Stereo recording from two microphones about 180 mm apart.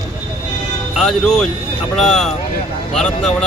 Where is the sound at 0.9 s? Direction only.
5° left (ahead or behind).